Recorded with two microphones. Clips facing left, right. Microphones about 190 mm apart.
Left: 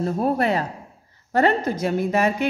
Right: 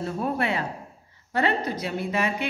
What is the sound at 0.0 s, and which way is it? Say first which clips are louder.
A woman's voice: left 6 dB; 40° left (ahead or behind).